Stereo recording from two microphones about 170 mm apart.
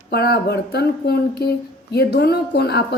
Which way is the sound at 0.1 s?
70° left (ahead or behind).